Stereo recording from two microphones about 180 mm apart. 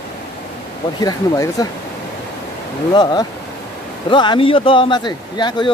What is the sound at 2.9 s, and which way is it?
Speech, 25° left (ahead or behind).